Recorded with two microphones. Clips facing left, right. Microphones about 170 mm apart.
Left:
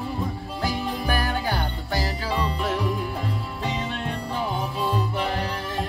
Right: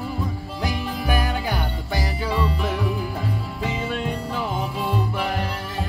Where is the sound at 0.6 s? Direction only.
15° right (ahead or behind).